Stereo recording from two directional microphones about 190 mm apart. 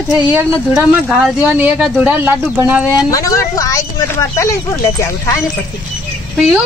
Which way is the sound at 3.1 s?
15° left (ahead or behind).